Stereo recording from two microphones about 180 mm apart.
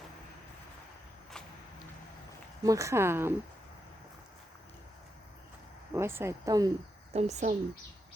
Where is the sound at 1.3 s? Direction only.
5° left (ahead or behind).